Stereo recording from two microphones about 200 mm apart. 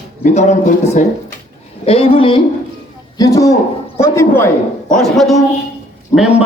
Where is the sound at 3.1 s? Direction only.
15° left (ahead or behind).